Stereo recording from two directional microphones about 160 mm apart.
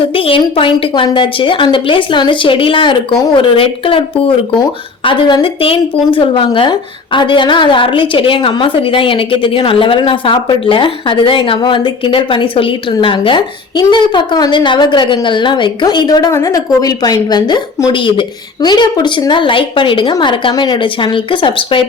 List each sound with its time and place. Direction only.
0.0 s a woman's voice: 35° left (ahead or behind)